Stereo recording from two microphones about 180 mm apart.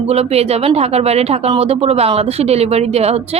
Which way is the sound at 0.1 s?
35° right (ahead or behind).